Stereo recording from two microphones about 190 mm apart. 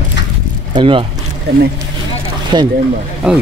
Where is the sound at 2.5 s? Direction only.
25° right (ahead or behind).